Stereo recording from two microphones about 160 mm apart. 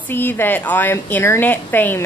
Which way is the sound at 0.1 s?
15° left (ahead or behind).